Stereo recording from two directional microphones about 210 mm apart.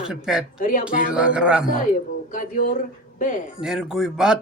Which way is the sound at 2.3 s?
40° left (ahead or behind).